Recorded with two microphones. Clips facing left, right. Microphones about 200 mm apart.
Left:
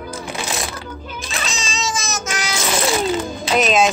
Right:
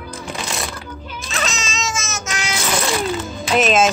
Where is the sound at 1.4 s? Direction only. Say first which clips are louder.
Left 3 dB; 35° left (ahead or behind).